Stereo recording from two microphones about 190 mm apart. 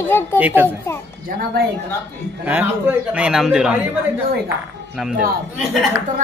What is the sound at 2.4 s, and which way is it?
A man's voice, 10° right (ahead or behind).